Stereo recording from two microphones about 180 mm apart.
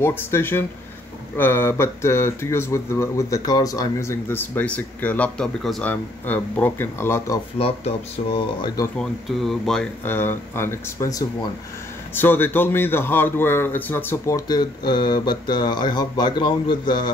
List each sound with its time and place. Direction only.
0.0 s speech: 15° left (ahead or behind)
7.5 s speech: 35° left (ahead or behind)
8.6 s speech: 20° left (ahead or behind)
8.9 s speech: centre (ahead or behind); by 17.1 s 25° left (ahead or behind)